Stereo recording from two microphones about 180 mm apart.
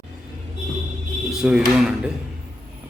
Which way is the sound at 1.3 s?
Centre (ahead or behind).